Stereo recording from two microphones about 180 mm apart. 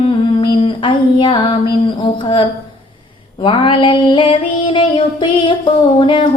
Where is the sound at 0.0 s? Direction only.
30° left (ahead or behind).